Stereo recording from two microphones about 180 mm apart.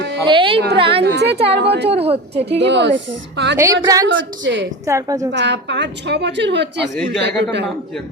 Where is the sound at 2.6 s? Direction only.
80° right.